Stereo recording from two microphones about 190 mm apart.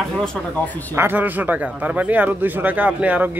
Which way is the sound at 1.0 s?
10° right (ahead or behind).